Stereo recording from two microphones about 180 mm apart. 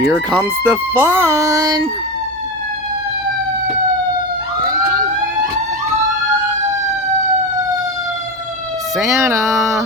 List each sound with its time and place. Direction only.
0.0 s speech: 5° right (ahead or behind)
9.1 s speech: 15° right (ahead or behind)